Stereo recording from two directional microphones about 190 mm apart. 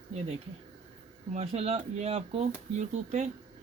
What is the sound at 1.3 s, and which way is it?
Speech, 35° right (ahead or behind).